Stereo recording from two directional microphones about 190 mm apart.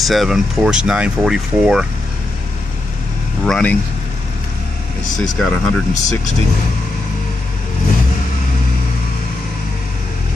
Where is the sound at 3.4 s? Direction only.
5° left (ahead or behind).